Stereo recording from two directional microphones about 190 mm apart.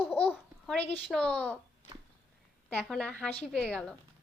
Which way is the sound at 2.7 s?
5° left (ahead or behind).